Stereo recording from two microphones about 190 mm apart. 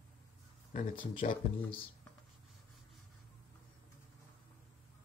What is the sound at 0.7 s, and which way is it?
Speech, 45° left (ahead or behind).